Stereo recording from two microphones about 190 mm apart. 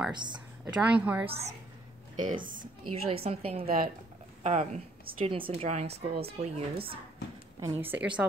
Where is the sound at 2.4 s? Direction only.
45° right (ahead or behind).